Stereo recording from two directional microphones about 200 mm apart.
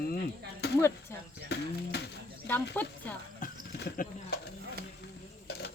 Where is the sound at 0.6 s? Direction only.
55° left (ahead or behind).